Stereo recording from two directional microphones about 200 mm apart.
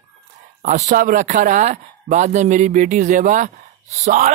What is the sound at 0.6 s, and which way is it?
Speech, 40° right (ahead or behind).